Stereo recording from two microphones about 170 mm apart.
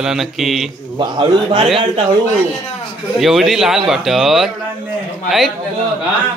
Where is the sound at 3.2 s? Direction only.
Centre (ahead or behind).